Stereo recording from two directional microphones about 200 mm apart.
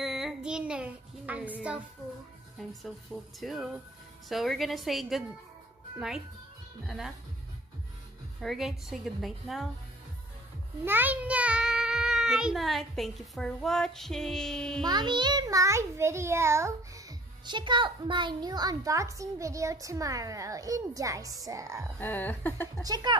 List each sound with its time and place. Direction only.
0.0 s child singing: centre (ahead or behind)
3.3 s a child's voice: centre (ahead or behind)
8.4 s a child's voice: centre (ahead or behind)
10.9 s a child's voice: 10° right (ahead or behind)
14.8 s a child's voice: 20° right (ahead or behind)
22.0 s a sound: 10° left (ahead or behind)
22.8 s speech: 20° right (ahead or behind)